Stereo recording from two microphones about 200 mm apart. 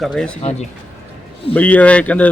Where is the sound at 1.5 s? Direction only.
5° left (ahead or behind).